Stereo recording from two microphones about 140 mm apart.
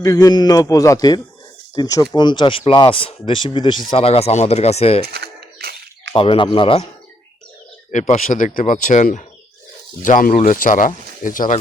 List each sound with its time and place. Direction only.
0.0 s a man's voice: 25° left (ahead or behind); by 5.0 s 50° left (ahead or behind)
6.1 s speech: 40° left (ahead or behind)
7.9 s speech: 60° left (ahead or behind)
10.0 s speech: 75° left (ahead or behind)